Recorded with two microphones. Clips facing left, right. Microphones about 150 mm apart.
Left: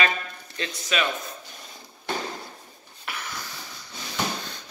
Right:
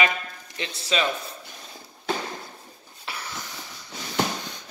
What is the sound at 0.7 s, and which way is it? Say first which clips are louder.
Speech: right 2 dB; 30° right (ahead or behind).